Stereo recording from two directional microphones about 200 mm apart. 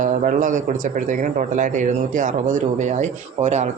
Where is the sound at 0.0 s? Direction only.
40° right (ahead or behind).